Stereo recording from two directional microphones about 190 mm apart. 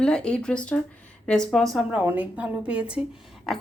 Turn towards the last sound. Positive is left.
turn(degrees=0)  # may be behind; listen again after turning